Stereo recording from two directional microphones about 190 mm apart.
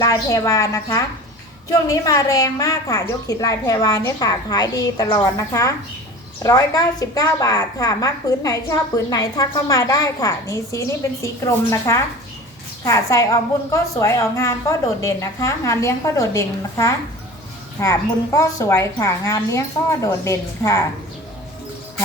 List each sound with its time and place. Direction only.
0.0 s a woman's voice: 15° left (ahead or behind)